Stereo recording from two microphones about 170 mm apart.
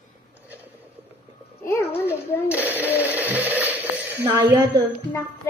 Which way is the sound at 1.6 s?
15° left (ahead or behind).